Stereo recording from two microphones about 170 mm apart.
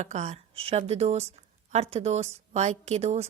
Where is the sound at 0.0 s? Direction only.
45° right (ahead or behind).